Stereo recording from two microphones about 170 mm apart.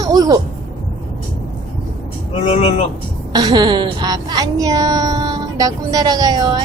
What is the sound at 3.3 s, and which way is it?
Speech, 25° right (ahead or behind).